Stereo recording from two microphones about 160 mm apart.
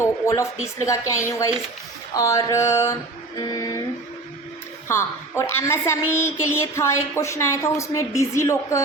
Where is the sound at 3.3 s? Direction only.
25° left (ahead or behind).